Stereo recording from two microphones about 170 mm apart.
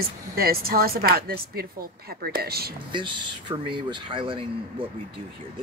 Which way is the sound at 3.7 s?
30° right (ahead or behind).